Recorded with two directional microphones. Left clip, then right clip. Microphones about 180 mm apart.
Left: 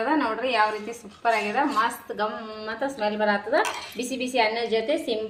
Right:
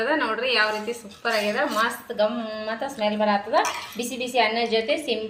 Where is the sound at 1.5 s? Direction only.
50° left (ahead or behind).